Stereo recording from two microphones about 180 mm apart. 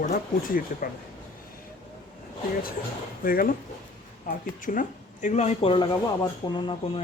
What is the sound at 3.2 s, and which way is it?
Speech, 55° left (ahead or behind).